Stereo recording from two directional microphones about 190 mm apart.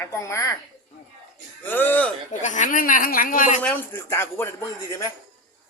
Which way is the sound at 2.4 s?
40° left (ahead or behind).